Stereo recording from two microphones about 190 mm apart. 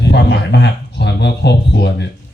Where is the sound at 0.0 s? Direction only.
65° left (ahead or behind).